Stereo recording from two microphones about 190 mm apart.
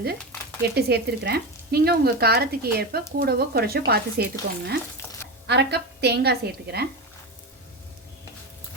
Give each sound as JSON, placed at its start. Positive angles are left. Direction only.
{"t": 0.8, "sound": "speech", "side_deg": -55}